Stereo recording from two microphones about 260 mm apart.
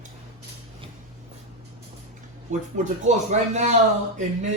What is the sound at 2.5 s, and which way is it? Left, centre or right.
Speech, right.